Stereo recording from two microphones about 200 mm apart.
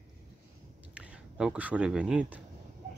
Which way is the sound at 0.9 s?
5° right (ahead or behind).